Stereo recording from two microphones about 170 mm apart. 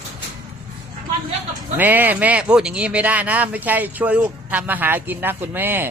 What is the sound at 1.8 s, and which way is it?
Speech, 10° right (ahead or behind).